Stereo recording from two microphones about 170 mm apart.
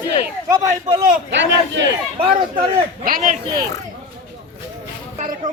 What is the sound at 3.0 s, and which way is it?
Speech, 55° right (ahead or behind).